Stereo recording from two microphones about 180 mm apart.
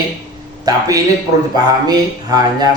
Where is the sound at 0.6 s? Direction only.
20° right (ahead or behind).